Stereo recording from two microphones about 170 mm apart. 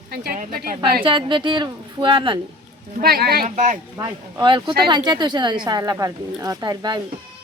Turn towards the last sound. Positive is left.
turn(degrees=-25)  # may be behind; listen again after turning